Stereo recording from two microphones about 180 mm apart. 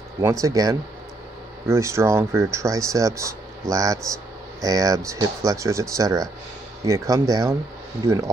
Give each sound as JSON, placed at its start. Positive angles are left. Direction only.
{"t": 0.2, "sound": "speech", "side_deg": -20}